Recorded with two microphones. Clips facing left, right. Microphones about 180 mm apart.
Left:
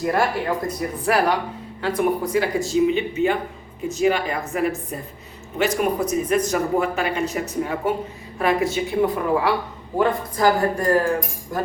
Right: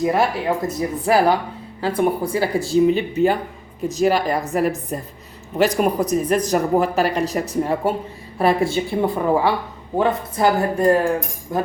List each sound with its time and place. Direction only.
0.0 s speech: 20° right (ahead or behind)